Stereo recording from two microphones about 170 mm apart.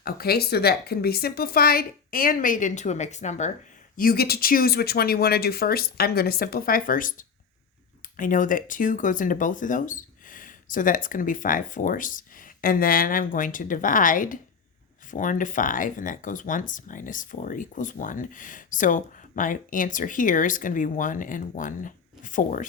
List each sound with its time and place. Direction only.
0.0 s a woman's voice: 65° left (ahead or behind); by 3.5 s 45° left (ahead or behind)
3.9 s a woman's voice: 60° left (ahead or behind)